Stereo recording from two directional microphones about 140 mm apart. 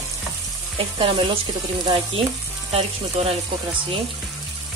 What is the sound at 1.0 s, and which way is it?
Speech, 40° right (ahead or behind).